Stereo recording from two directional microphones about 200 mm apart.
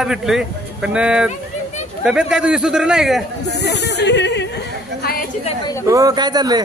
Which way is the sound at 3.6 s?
60° left (ahead or behind).